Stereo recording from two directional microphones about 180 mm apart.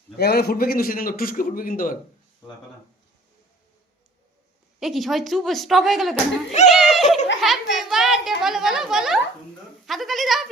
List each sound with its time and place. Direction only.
0.2 s a man's voice: 60° left (ahead or behind)
4.8 s a child's voice: centre (ahead or behind)
6.5 s speech: 40° left (ahead or behind)
6.9 s a child's voice: centre (ahead or behind)